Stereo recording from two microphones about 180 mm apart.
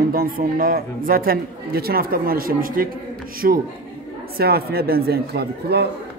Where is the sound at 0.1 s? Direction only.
55° right (ahead or behind).